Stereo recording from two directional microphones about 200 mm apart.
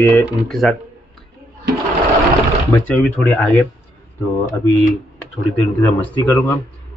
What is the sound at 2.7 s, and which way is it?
Speech, 10° left (ahead or behind).